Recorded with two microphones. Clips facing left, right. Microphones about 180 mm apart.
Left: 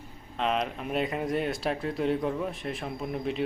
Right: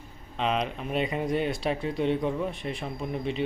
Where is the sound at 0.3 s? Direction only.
Centre (ahead or behind).